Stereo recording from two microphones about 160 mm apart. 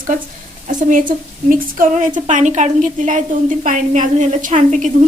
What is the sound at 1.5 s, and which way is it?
A woman's voice, 55° right (ahead or behind).